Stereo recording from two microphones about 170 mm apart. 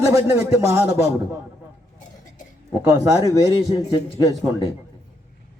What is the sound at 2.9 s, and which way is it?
Speech, 20° right (ahead or behind).